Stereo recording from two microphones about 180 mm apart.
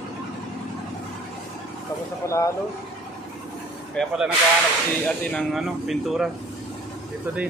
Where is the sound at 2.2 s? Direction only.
15° left (ahead or behind).